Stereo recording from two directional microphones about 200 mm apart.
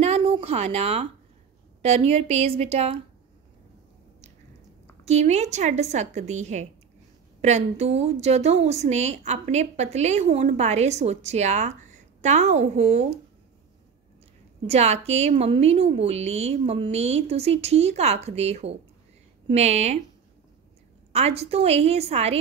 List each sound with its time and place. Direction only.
0.0 s a sound: 30° right (ahead or behind)
1.8 s a woman's voice: 30° right (ahead or behind)
5.0 s a woman's voice: 35° right (ahead or behind)
14.7 s a woman's voice: 30° right (ahead or behind)
21.1 s a woman's voice: 30° right (ahead or behind)